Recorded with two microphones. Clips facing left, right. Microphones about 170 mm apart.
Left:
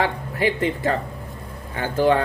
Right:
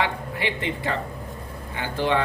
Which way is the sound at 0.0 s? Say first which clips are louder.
Left 4 dB; 40° left (ahead or behind).